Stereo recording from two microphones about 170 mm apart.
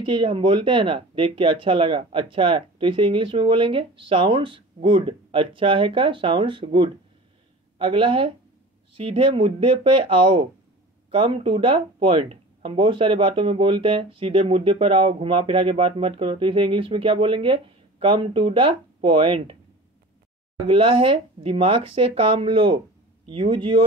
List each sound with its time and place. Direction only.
0.0 s speech: 30° right (ahead or behind)
20.6 s speech: 30° right (ahead or behind)